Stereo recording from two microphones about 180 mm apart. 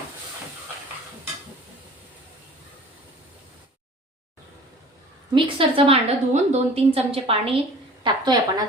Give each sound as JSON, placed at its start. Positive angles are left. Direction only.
{"t": 5.3, "sound": "a woman's voice", "side_deg": -30}